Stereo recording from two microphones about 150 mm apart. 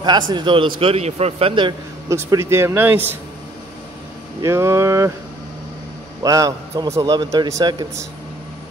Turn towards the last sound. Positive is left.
turn(degrees=-25)  # may be behind; listen again after turning